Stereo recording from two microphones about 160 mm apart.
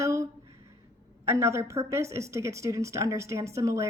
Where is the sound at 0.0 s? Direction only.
20° right (ahead or behind).